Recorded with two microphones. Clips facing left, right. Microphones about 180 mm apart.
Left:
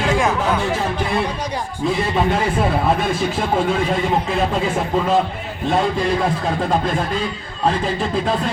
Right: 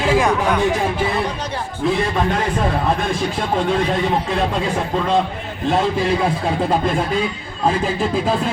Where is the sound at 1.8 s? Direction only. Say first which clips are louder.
Even; 5° left (ahead or behind).